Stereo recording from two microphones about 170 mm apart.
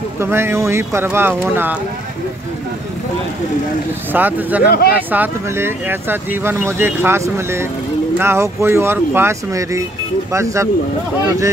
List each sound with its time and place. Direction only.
0.2 s speech: 15° right (ahead or behind)
4.1 s speech: 10° right (ahead or behind)
4.6 s speech: 65° left (ahead or behind)
4.9 s speech: 10° right (ahead or behind)